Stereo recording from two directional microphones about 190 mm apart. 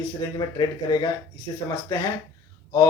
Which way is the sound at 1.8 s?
15° left (ahead or behind).